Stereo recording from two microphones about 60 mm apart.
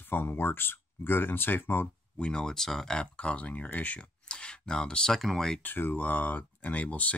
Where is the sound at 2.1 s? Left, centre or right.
Centre.